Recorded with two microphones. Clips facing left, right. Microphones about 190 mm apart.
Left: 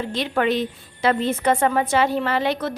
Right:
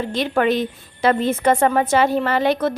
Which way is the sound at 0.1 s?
45° right (ahead or behind).